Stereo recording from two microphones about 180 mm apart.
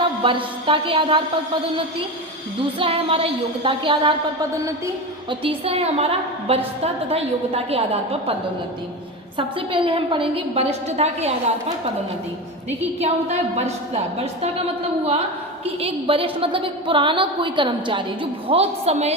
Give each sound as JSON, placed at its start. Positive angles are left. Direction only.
{"t": 0.2, "sound": "a woman's voice", "side_deg": -30}
{"t": 2.7, "sound": "a woman's voice", "side_deg": -30}
{"t": 5.3, "sound": "a woman's voice", "side_deg": -30}
{"t": 9.6, "sound": "a woman's voice", "side_deg": -30}
{"t": 13.0, "sound": "a woman's voice", "side_deg": -35}
{"t": 15.8, "sound": "a woman's voice", "side_deg": -30}